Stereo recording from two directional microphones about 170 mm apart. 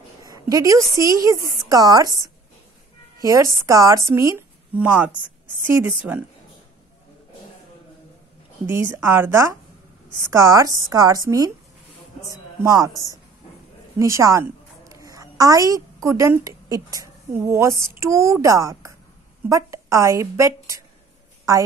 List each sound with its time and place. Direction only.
0.2 s a woman's voice: 20° right (ahead or behind)
8.6 s a woman's voice: 15° right (ahead or behind)